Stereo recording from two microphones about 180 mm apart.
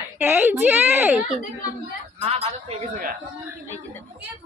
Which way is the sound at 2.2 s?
35° right (ahead or behind).